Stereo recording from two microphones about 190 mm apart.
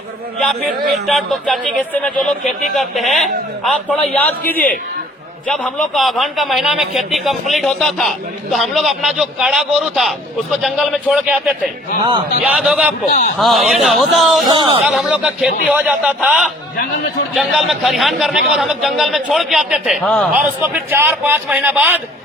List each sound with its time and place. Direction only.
0.3 s a man's voice: 5° left (ahead or behind)
4.4 s a man's voice: 50° left (ahead or behind)
5.5 s a man's voice: centre (ahead or behind)
13.1 s a man's voice: 40° left (ahead or behind)
13.4 s a man's voice: centre (ahead or behind)
14.4 s speech: 25° right (ahead or behind)
14.8 s a man's voice: 5° right (ahead or behind)